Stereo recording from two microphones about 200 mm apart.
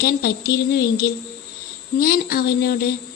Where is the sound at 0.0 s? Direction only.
50° left (ahead or behind).